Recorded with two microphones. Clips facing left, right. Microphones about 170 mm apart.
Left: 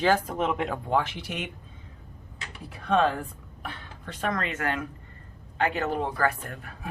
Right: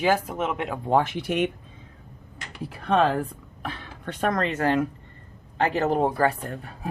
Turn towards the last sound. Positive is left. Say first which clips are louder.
# right 5 dB
turn(degrees=-30)  # may be behind; listen again after turning